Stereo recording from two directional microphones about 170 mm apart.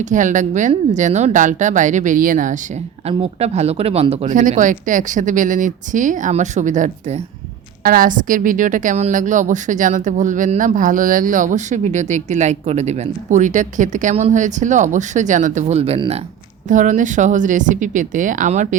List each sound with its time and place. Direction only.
0.0 s a woman's voice: 45° right (ahead or behind)
3.1 s a woman's voice: 35° right (ahead or behind)
16.6 s a woman's voice: 45° right (ahead or behind)